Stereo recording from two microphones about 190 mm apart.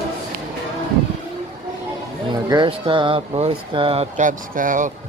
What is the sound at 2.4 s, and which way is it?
Speech, 25° right (ahead or behind).